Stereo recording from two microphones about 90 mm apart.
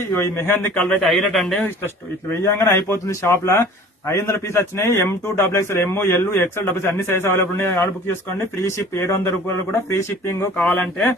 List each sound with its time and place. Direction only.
0.1 s a man's voice: 30° left (ahead or behind)
0.8 s speech: 5° left (ahead or behind)
2.4 s a man's voice: 30° left (ahead or behind)
10.7 s a man's voice: 20° left (ahead or behind)